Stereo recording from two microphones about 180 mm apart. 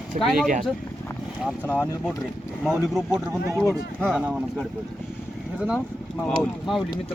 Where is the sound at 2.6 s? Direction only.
5° right (ahead or behind).